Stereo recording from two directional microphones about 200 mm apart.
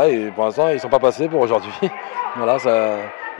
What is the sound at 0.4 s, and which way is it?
Speech, 25° left (ahead or behind).